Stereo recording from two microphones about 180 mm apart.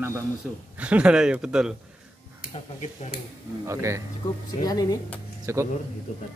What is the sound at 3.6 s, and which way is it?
Speech, 15° right (ahead or behind).